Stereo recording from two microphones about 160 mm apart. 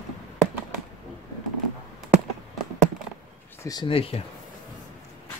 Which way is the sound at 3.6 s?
25° left (ahead or behind).